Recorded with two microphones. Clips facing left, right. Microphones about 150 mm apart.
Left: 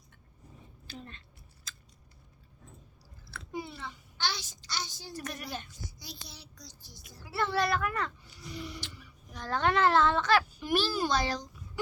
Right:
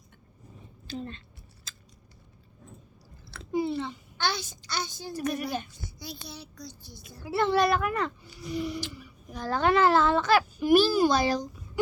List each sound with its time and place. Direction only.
0.9 s speech: 30° right (ahead or behind)
3.3 s a child's voice: 30° right (ahead or behind)
4.2 s a child's voice: 55° right (ahead or behind)
5.1 s a child's voice: 10° right (ahead or behind)
5.8 s speech: 60° right (ahead or behind)
7.3 s a child's voice: 20° right (ahead or behind)